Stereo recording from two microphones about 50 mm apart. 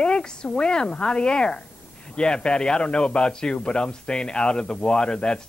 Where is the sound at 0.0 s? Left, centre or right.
Centre.